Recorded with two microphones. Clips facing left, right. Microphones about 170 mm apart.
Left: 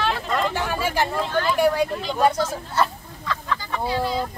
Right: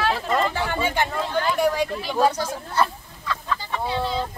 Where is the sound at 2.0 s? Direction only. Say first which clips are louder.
Left 1 dB; 10° right (ahead or behind).